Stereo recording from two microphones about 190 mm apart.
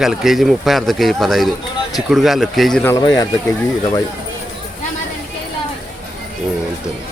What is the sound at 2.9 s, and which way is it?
Speech, 20° left (ahead or behind).